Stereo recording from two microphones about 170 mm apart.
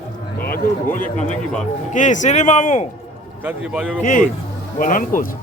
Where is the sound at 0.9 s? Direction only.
50° left (ahead or behind).